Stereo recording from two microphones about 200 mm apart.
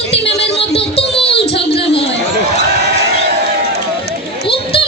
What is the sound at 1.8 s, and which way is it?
Chatter, 30° left (ahead or behind).